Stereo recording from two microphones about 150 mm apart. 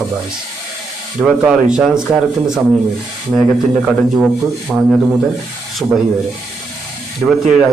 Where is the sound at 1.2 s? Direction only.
5° right (ahead or behind).